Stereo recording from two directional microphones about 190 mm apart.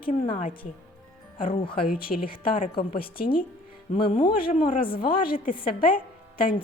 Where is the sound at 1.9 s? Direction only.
50° left (ahead or behind).